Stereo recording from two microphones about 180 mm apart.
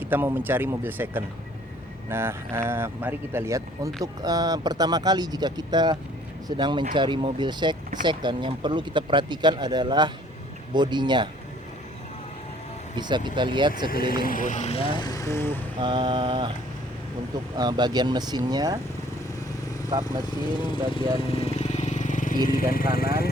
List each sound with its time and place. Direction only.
0.0 s speech: 10° right (ahead or behind)
13.0 s speech: 25° right (ahead or behind)
14.1 s speech: 50° left (ahead or behind); by 15.5 s 15° left (ahead or behind)
15.8 s speech: 25° right (ahead or behind)
17.6 s speech: 25° right (ahead or behind)
20.6 s speech: 25° left (ahead or behind)
21.2 s motorcycle: 35° left (ahead or behind)
22.7 s speech: 55° left (ahead or behind)